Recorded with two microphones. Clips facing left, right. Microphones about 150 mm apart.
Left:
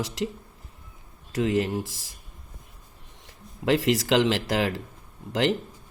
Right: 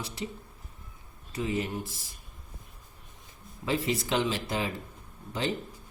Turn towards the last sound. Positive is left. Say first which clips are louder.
# left 7 dB
turn(degrees=90)